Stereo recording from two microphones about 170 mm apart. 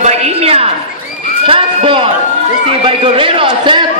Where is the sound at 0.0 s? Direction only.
40° right (ahead or behind).